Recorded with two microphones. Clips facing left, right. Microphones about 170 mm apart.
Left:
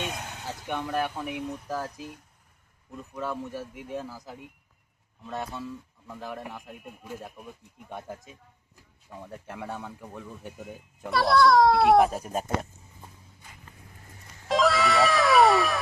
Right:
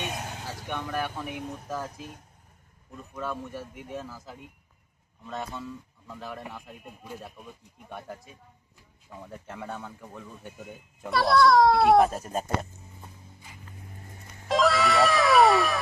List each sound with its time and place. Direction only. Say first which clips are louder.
0.2 s vehicle: right 2 dB; 35° right (ahead or behind)
0.7 s speech: left 3 dB; 15° left (ahead or behind)
3.2 s speech: left 1 dB; 10° left (ahead or behind)
9.0 s speech: left 1 dB; 10° left (ahead or behind)
10.6 s a child's voice: left 1 dB; centre (ahead or behind)
14.4 s music: even; centre (ahead or behind)